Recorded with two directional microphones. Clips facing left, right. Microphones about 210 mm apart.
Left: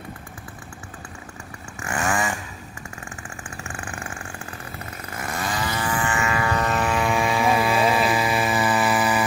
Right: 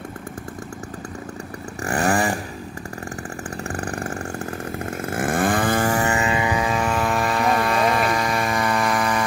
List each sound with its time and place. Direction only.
1.8 s chainsaw: 35° right (ahead or behind)
3.6 s chainsaw: 40° right (ahead or behind)
4.7 s chainsaw: 50° right (ahead or behind)
6.3 s vehicle: 15° right (ahead or behind)
6.7 s vehicle: 5° left (ahead or behind)